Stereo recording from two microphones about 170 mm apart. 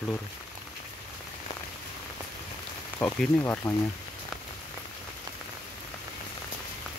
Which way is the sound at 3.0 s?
10° left (ahead or behind).